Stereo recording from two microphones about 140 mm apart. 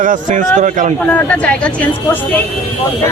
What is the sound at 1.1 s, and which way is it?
Speech, 10° left (ahead or behind).